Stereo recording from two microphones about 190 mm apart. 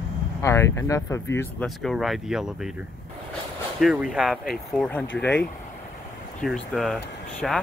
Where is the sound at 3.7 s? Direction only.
Centre (ahead or behind).